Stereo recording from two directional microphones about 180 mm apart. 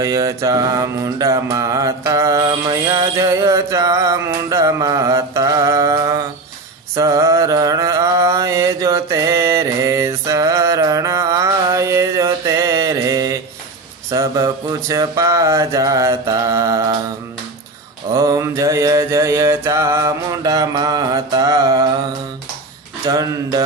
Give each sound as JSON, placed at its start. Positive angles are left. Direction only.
{"t": 0.0, "sound": "mantra", "side_deg": -15}
{"t": 18.1, "sound": "mantra", "side_deg": -15}
{"t": 23.0, "sound": "speech", "side_deg": -20}